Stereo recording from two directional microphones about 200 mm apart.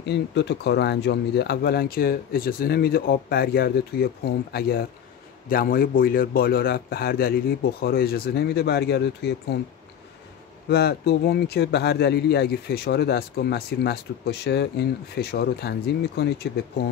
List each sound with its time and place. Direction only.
0.0 s speech: 60° left (ahead or behind)
10.7 s speech: 55° left (ahead or behind)